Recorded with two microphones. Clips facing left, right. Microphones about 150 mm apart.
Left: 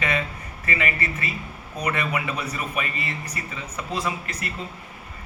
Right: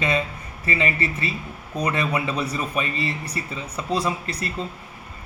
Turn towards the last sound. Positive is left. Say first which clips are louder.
# right 3 dB
turn(degrees=-35)  # may be behind; listen again after turning